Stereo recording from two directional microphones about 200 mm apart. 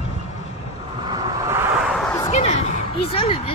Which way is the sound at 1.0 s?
15° right (ahead or behind).